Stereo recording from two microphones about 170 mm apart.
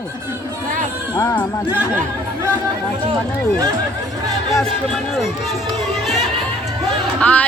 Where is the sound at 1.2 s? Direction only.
15° left (ahead or behind).